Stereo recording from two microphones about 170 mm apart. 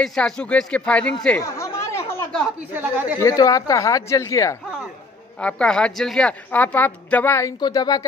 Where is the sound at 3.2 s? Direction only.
20° left (ahead or behind).